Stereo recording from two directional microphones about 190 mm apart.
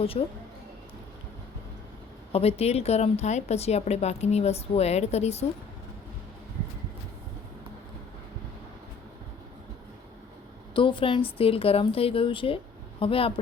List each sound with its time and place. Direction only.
0.0 s a woman's voice: 30° left (ahead or behind)
2.3 s a woman's voice: 30° left (ahead or behind)
10.8 s a woman's voice: 25° left (ahead or behind)